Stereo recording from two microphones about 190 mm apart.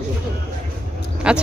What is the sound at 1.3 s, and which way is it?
Speech, 5° right (ahead or behind).